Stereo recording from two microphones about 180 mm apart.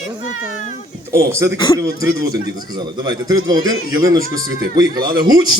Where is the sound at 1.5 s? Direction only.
25° left (ahead or behind).